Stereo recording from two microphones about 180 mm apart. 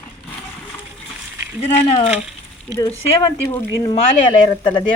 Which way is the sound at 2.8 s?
20° left (ahead or behind).